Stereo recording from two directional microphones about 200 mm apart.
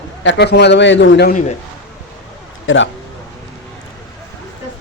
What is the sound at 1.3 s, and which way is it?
Speech, 40° left (ahead or behind).